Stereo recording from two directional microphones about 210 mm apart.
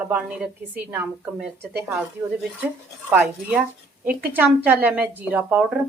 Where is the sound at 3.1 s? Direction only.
5° right (ahead or behind).